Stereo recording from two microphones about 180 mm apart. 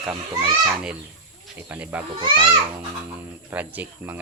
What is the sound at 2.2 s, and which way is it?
Speech, 25° right (ahead or behind).